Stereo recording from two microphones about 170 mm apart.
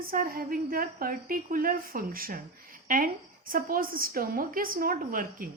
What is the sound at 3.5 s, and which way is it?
A woman's voice, 55° right (ahead or behind).